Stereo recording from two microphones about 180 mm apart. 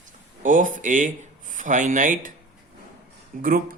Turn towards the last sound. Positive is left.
turn(degrees=-50)  # may be behind; listen again after turning